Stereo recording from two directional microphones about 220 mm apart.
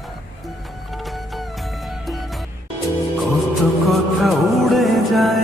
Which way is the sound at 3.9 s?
Centre (ahead or behind).